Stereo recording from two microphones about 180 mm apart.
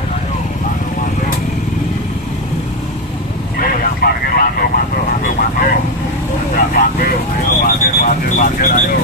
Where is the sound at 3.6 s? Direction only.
55° left (ahead or behind).